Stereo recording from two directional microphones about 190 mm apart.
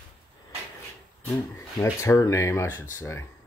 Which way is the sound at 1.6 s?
15° left (ahead or behind).